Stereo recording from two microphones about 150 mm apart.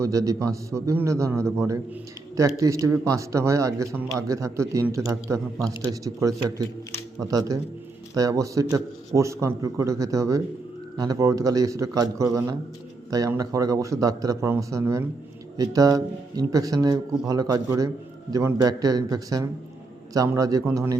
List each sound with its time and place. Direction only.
0.0 s a man's voice: 20° right (ahead or behind)